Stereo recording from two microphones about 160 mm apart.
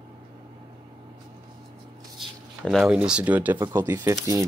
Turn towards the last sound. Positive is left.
turn(degrees=-20)  # may be behind; listen again after turning